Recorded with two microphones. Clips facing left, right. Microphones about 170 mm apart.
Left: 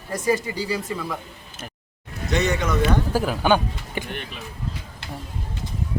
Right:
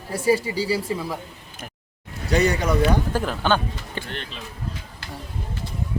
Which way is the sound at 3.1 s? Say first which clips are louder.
Left 2 dB; 10° left (ahead or behind).